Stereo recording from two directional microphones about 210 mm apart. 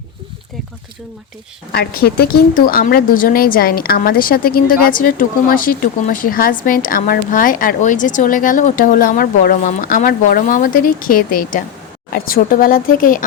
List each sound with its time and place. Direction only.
1.7 s a woman's voice: 50° left (ahead or behind)